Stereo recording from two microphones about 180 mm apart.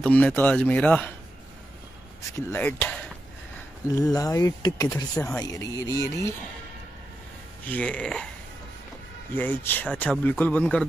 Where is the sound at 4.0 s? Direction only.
20° left (ahead or behind).